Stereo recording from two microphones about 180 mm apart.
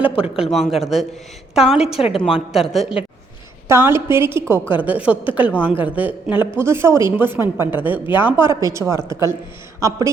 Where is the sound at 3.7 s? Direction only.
15° right (ahead or behind).